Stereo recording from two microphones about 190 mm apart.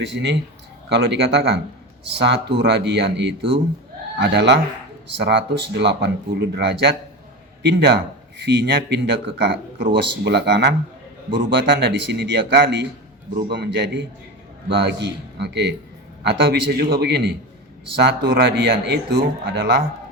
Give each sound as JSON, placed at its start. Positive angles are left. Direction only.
{"t": 0.0, "sound": "a man's voice", "side_deg": -65}
{"t": 11.3, "sound": "a man's voice", "side_deg": -25}
{"t": 11.5, "sound": "a man's voice", "side_deg": -65}